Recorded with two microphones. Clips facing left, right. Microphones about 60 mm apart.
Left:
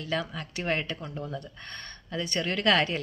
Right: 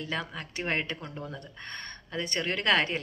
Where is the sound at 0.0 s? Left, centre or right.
Right.